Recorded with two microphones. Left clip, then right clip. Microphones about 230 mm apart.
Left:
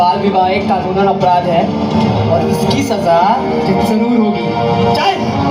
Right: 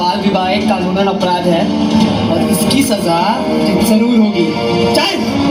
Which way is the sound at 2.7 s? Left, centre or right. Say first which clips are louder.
Left 2 dB; right.